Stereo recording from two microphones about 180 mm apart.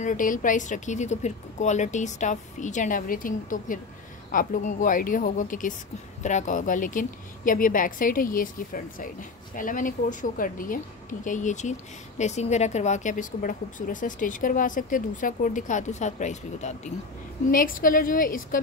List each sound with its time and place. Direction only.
0.0 s a woman's voice: 45° left (ahead or behind)